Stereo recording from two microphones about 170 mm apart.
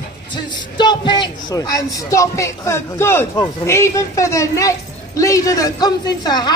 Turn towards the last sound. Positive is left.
turn(degrees=25)  # may be behind; listen again after turning